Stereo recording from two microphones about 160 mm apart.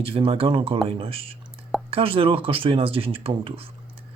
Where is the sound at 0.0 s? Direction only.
35° right (ahead or behind).